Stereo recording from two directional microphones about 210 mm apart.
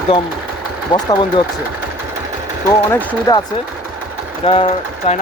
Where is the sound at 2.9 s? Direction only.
10° left (ahead or behind).